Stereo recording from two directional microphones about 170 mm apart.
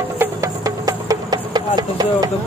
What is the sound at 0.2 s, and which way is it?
Music, 20° right (ahead or behind).